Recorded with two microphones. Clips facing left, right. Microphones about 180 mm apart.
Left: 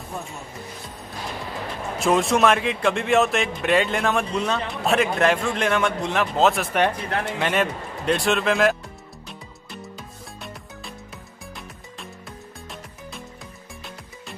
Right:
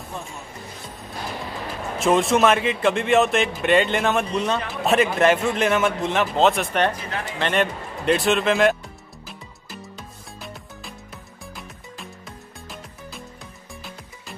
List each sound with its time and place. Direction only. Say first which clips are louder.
2.0 s a man's voice: right 1 dB; centre (ahead or behind)
7.1 s speech: left 4 dB; 60° left (ahead or behind)
7.3 s a man's voice: right 3 dB; 5° left (ahead or behind)
9.3 s music: even; centre (ahead or behind)